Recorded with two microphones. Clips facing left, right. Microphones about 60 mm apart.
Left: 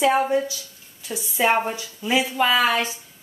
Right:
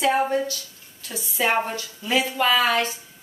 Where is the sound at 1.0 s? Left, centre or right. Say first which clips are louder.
Left 3 dB; centre.